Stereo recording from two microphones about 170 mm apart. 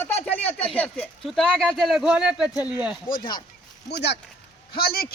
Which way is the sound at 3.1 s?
55° left (ahead or behind).